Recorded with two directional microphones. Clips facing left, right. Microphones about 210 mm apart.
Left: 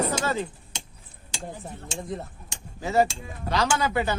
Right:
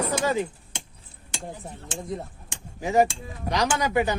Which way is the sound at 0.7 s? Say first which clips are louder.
Right 1 dB; 55° right (ahead or behind).